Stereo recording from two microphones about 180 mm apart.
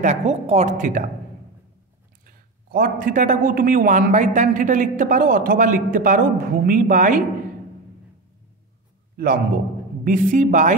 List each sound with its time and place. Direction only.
0.0 s a woman's voice: 40° right (ahead or behind)
2.2 s a man's voice: 50° right (ahead or behind)
9.1 s a man's voice: 55° right (ahead or behind)